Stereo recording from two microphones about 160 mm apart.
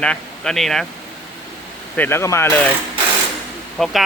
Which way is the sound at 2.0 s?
15° left (ahead or behind).